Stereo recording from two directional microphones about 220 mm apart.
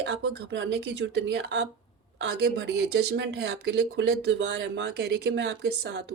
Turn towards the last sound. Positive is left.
turn(degrees=-50)  # may be behind; listen again after turning